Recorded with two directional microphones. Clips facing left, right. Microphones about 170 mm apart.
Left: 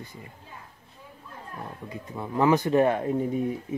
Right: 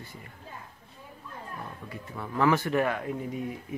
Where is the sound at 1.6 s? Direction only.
20° left (ahead or behind).